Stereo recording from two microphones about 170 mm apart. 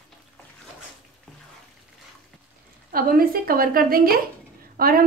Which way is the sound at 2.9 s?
60° right (ahead or behind).